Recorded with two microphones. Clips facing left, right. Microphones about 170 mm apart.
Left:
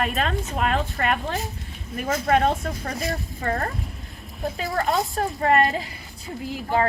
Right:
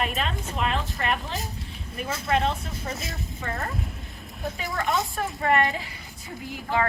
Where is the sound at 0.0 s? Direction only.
45° left (ahead or behind).